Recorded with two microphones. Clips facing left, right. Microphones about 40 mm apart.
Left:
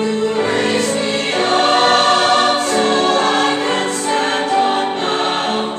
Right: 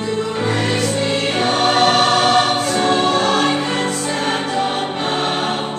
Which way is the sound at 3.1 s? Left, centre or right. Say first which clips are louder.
Left 1 dB; centre.